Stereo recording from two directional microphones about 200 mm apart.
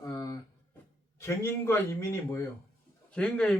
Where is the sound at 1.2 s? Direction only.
15° left (ahead or behind).